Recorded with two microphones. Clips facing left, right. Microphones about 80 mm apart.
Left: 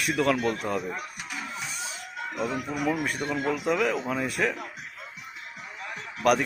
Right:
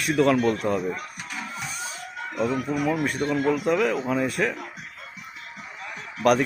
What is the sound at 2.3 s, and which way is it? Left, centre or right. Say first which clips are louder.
A man's voice: right 5 dB; centre.